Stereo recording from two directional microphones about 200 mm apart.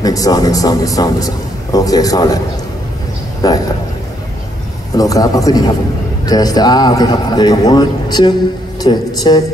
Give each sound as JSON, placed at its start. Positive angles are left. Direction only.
{"t": 0.0, "sound": "a man's voice", "side_deg": 20}
{"t": 3.4, "sound": "a man's voice", "side_deg": 20}
{"t": 4.9, "sound": "a man's voice", "side_deg": 15}